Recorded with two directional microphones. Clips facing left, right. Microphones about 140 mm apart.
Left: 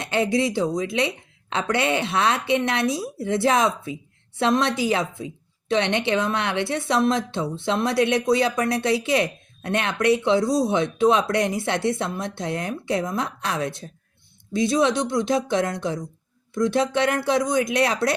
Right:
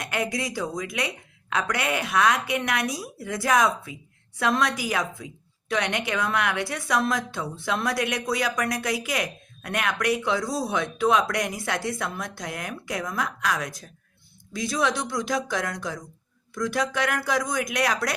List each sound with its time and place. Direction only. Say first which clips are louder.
0.0 s a woman's voice: left 7 dB; 25° left (ahead or behind)